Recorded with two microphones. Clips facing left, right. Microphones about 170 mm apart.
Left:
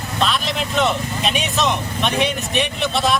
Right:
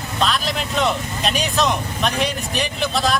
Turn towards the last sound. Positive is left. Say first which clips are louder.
# left 1 dB
turn(degrees=0)  # may be behind; listen again after turning